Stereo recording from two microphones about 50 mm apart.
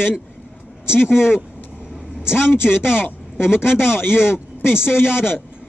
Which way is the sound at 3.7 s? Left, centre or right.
Centre.